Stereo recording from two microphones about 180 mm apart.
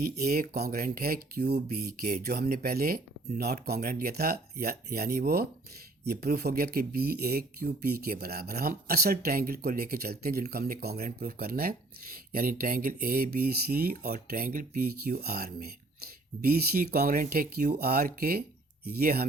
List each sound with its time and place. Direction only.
0.0 s speech: 60° right (ahead or behind)